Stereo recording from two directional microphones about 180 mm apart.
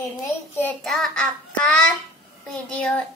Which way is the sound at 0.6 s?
5° left (ahead or behind).